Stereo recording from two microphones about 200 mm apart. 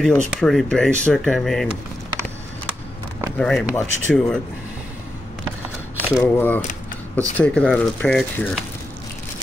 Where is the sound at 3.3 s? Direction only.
5° left (ahead or behind).